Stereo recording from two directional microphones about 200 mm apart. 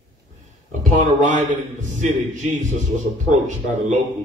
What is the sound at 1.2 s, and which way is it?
A man's voice, 40° right (ahead or behind).